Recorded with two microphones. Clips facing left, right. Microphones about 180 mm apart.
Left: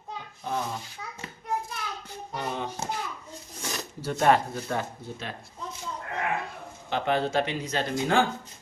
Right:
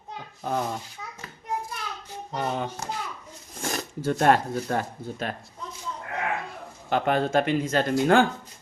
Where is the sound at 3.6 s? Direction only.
50° right (ahead or behind).